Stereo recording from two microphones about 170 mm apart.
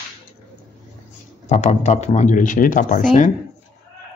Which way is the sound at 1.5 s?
40° left (ahead or behind).